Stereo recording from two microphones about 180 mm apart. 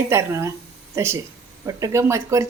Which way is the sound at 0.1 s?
15° right (ahead or behind).